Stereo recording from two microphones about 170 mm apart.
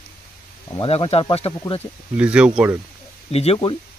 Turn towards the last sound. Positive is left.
turn(degrees=30)  # may be behind; listen again after turning